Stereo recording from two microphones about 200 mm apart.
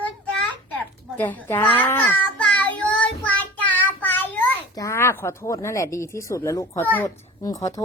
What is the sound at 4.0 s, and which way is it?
A child's voice, 10° left (ahead or behind).